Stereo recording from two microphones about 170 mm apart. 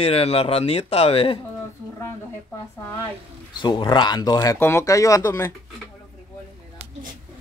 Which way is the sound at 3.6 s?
25° left (ahead or behind).